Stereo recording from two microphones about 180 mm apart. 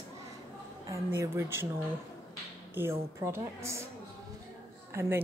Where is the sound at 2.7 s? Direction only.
15° right (ahead or behind).